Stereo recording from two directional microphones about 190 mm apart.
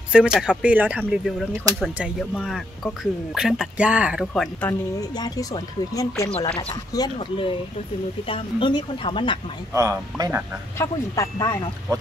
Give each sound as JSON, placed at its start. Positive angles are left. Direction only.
{"t": 0.1, "sound": "speech", "side_deg": -5}
{"t": 4.3, "sound": "speech", "side_deg": 5}
{"t": 5.1, "sound": "speech", "side_deg": 20}
{"t": 9.8, "sound": "speech", "side_deg": -20}
{"t": 10.8, "sound": "speech", "side_deg": 15}